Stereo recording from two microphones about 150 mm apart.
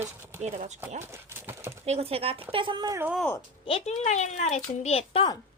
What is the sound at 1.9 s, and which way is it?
Speech, 40° right (ahead or behind).